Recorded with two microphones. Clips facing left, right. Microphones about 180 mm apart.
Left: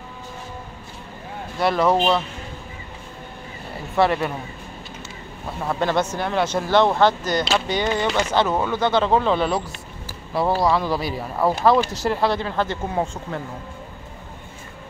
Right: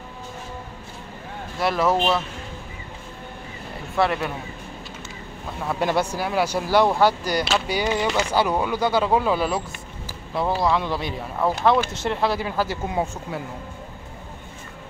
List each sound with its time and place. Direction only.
1.6 s speech: centre (ahead or behind)
3.9 s speech: centre (ahead or behind)
5.7 s speech: 10° right (ahead or behind)
10.6 s speech: centre (ahead or behind)